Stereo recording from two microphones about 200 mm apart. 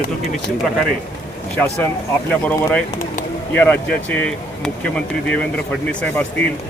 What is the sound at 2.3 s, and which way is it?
Speech, 5° left (ahead or behind).